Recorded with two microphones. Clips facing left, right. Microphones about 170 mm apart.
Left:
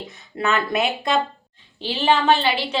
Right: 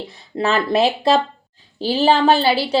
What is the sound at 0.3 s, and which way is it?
A woman's voice, 30° right (ahead or behind).